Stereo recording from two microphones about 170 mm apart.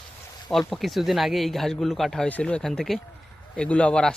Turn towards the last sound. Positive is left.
turn(degrees=5)  # may be behind; listen again after turning